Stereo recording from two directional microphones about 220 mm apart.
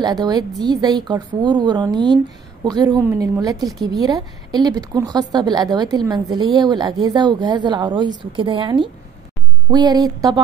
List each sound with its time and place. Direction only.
0.0 s a woman's voice: 20° right (ahead or behind)